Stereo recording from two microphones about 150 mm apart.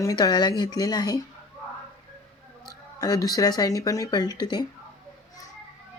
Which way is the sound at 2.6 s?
25° left (ahead or behind).